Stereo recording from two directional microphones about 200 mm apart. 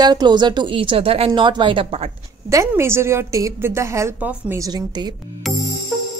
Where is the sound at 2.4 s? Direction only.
15° right (ahead or behind).